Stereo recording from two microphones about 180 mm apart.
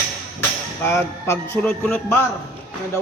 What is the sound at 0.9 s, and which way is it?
A man's voice, 15° left (ahead or behind).